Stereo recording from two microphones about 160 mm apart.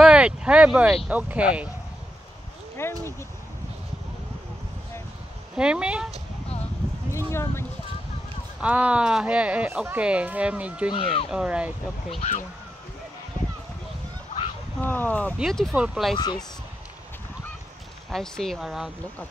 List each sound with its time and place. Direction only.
0.0 s speech: 5° right (ahead or behind)
2.8 s speech: 15° left (ahead or behind)
5.6 s speech: 5° right (ahead or behind)
7.1 s a sound: 15° left (ahead or behind)
8.5 s speech: 10° right (ahead or behind)
10.9 s speech: 35° left (ahead or behind)
11.2 s speech: 5° right (ahead or behind)
12.1 s speech: 40° left (ahead or behind)
14.8 s speech: 10° left (ahead or behind)
18.1 s speech: 5° left (ahead or behind)